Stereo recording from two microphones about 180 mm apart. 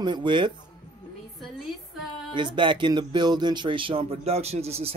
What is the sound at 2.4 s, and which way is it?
Speech, 25° right (ahead or behind).